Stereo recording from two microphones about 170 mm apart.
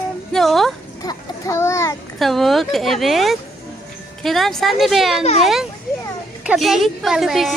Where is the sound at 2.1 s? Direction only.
Centre (ahead or behind).